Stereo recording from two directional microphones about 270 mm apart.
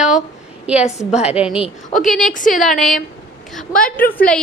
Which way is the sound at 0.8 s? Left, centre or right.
Left.